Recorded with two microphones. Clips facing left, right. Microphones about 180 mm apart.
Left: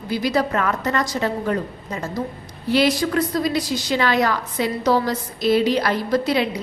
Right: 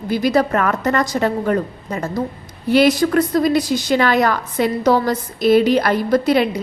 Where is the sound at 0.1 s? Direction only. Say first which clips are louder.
Right 4 dB; 50° right (ahead or behind).